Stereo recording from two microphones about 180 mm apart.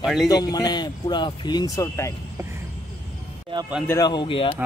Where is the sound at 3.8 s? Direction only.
20° left (ahead or behind).